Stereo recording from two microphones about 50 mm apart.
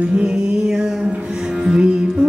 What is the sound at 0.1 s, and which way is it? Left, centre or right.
Music, centre.